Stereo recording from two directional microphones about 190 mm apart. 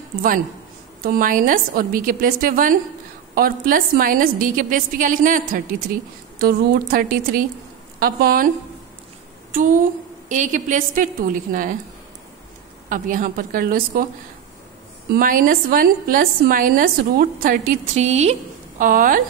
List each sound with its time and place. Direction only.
1.0 s a woman's voice: 45° right (ahead or behind)
9.5 s a woman's voice: 45° right (ahead or behind)
12.9 s a woman's voice: 45° right (ahead or behind)
15.1 s a woman's voice: 45° right (ahead or behind)